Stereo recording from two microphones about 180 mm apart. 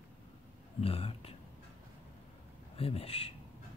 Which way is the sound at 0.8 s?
30° left (ahead or behind).